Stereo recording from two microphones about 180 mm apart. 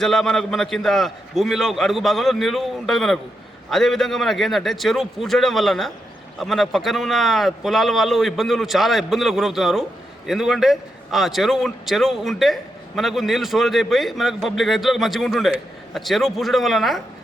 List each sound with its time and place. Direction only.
0.0 s speech: centre (ahead or behind)